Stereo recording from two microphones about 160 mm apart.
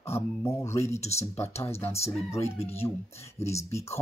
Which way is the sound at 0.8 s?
45° left (ahead or behind).